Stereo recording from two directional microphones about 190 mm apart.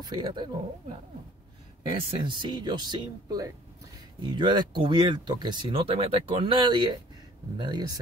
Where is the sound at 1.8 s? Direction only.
25° right (ahead or behind).